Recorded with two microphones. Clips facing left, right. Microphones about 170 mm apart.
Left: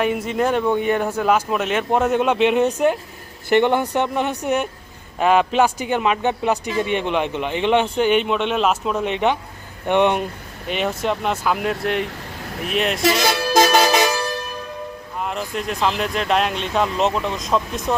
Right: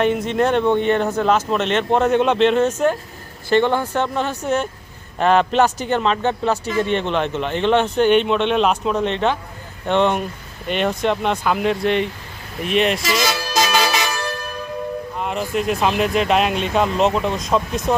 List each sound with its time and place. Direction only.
0.0 s speech: 5° left (ahead or behind)
10.7 s speech: 5° left (ahead or behind)
13.1 s music: 55° left (ahead or behind)
15.2 s speech: centre (ahead or behind)